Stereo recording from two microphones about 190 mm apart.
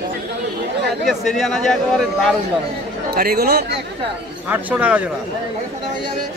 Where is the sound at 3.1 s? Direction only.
55° right (ahead or behind).